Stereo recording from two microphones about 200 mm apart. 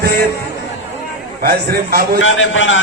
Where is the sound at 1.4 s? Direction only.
50° right (ahead or behind).